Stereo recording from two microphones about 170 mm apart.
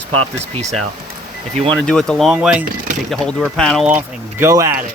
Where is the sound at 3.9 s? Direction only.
15° right (ahead or behind).